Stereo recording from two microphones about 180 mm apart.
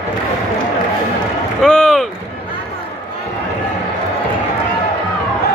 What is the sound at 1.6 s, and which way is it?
Boat, 5° left (ahead or behind).